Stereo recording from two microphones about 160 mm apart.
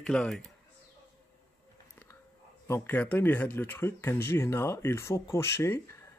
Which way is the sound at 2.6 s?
15° left (ahead or behind).